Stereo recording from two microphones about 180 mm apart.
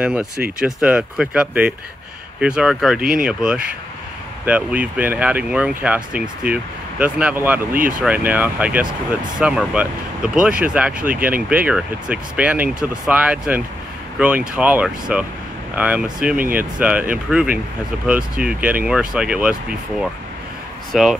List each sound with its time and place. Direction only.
0.0 s speech: 5° right (ahead or behind)
3.0 s speech: 50° right (ahead or behind)
3.3 s speech: 5° right (ahead or behind)